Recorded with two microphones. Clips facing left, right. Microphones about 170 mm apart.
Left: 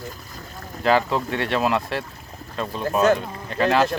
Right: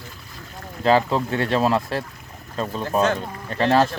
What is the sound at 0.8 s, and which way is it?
Speech, 30° right (ahead or behind).